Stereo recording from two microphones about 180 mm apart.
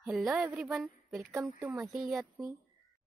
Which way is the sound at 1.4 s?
15° right (ahead or behind).